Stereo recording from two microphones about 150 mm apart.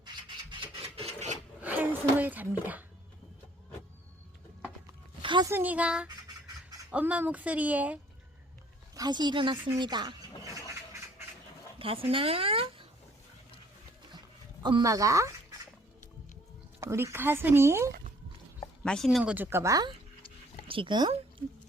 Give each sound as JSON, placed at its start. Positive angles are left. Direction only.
{"t": 0.0, "sound": "rub", "side_deg": -35}
{"t": 1.6, "sound": "a sound", "side_deg": -10}
{"t": 5.2, "sound": "a sound", "side_deg": -30}
{"t": 5.5, "sound": "speech", "side_deg": -15}
{"t": 9.0, "sound": "a sound", "side_deg": -30}
{"t": 11.8, "sound": "speech", "side_deg": -40}
{"t": 14.6, "sound": "speech", "side_deg": -30}
{"t": 16.8, "sound": "speech", "side_deg": -15}
{"t": 18.8, "sound": "speech", "side_deg": 0}
{"t": 20.7, "sound": "speech", "side_deg": -35}